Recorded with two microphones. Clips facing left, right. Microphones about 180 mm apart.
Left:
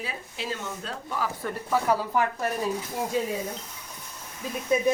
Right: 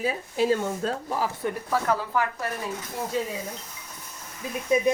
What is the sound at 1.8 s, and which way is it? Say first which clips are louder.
Speech: left 2 dB; 10° left (ahead or behind).